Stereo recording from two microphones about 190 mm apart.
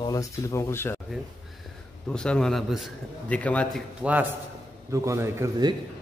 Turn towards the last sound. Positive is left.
turn(degrees=-20)  # may be behind; listen again after turning